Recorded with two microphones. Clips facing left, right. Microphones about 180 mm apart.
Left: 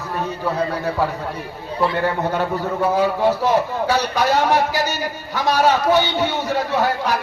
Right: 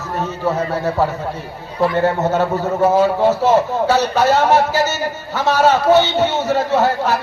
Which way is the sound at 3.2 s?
15° left (ahead or behind).